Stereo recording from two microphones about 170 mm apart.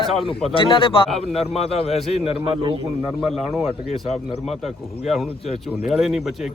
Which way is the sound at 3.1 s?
Centre (ahead or behind).